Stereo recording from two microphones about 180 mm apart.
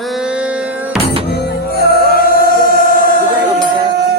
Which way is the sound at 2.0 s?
55° left (ahead or behind).